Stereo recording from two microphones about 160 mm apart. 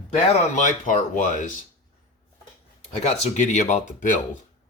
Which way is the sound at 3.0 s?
45° left (ahead or behind).